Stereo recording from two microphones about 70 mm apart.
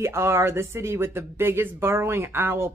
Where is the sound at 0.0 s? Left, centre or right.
Right.